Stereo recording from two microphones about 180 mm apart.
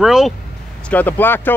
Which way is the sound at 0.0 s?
5° right (ahead or behind).